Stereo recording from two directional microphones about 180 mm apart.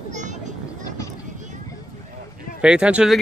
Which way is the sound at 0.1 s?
40° right (ahead or behind).